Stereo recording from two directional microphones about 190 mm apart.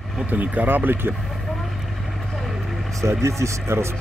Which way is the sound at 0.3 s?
10° right (ahead or behind).